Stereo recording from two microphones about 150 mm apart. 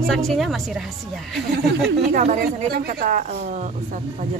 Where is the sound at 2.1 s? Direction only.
55° right (ahead or behind).